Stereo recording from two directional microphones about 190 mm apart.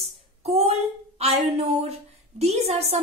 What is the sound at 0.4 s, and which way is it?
Speech, 35° right (ahead or behind).